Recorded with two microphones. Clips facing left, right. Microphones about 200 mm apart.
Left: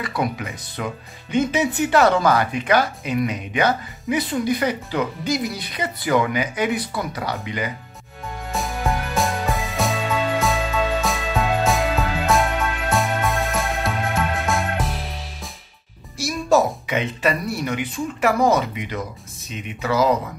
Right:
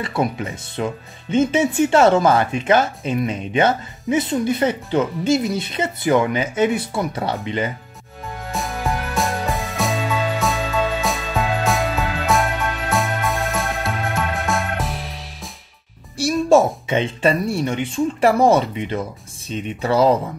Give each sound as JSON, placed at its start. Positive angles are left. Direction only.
{"t": 0.0, "sound": "speech", "side_deg": -25}
{"t": 8.5, "sound": "music", "side_deg": 0}
{"t": 16.2, "sound": "speech", "side_deg": -30}